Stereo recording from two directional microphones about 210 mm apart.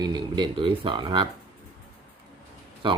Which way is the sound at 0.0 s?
20° right (ahead or behind).